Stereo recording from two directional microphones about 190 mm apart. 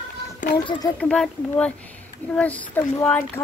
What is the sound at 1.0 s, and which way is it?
A child's voice, 5° left (ahead or behind).